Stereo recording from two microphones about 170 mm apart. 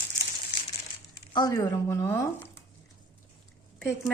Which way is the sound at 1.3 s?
20° left (ahead or behind).